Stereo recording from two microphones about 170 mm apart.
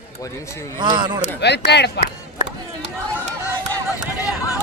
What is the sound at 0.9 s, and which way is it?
Speech, 25° right (ahead or behind).